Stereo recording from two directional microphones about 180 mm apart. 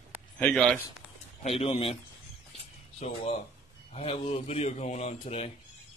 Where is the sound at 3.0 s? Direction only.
40° left (ahead or behind).